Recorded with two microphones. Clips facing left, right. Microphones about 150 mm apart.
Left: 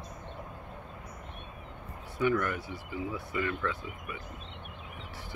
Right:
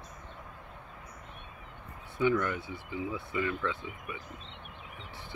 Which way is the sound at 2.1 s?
20° right (ahead or behind).